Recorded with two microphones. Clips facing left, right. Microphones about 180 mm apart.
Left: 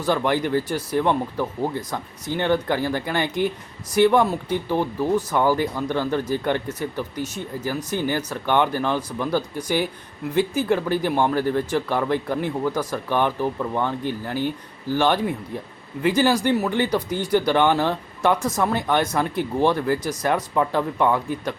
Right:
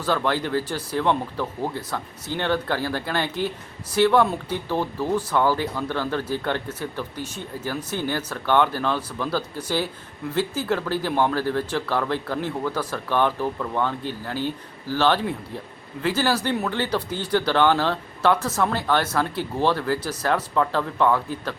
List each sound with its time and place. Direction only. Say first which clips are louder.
0.0 s speech: left 2 dB; 15° left (ahead or behind)